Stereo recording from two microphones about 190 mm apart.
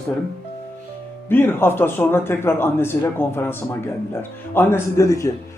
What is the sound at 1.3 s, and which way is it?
A man's voice, 10° left (ahead or behind).